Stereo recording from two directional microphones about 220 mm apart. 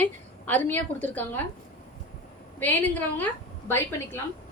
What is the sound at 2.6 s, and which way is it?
A woman's voice, 10° left (ahead or behind).